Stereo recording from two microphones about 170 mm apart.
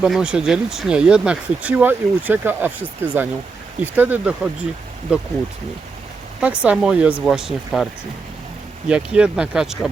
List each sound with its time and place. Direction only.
0.0 s speech: 5° right (ahead or behind)
6.4 s speech: 5° right (ahead or behind)
8.9 s speech: 5° right (ahead or behind)